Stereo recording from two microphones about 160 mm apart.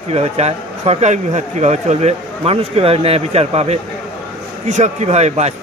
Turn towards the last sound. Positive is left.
turn(degrees=-45)  # may be behind; listen again after turning